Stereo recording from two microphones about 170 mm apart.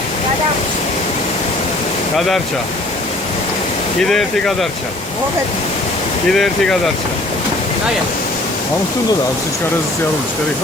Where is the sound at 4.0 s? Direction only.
5° left (ahead or behind).